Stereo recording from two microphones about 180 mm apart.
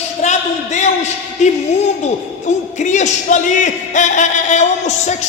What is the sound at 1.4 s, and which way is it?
Speech, 40° left (ahead or behind).